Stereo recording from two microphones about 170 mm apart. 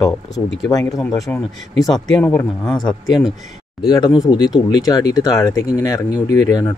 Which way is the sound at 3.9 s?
25° left (ahead or behind).